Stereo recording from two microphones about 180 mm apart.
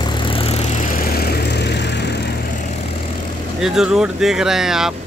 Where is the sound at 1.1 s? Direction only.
60° left (ahead or behind).